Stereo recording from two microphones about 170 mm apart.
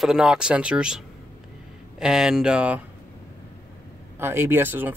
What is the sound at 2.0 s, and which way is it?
Speech, 5° right (ahead or behind).